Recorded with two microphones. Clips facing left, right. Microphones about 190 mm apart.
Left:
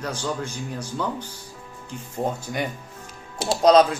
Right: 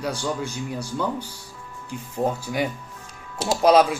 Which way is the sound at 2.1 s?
5° right (ahead or behind).